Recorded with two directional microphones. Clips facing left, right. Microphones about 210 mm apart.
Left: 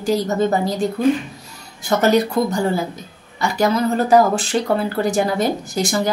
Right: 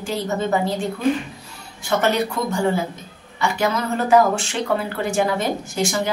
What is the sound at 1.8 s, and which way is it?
A woman's voice, 40° left (ahead or behind).